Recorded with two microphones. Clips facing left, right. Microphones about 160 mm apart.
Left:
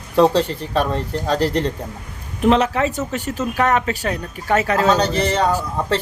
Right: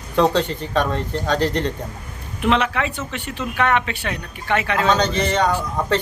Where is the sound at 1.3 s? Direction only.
35° left (ahead or behind).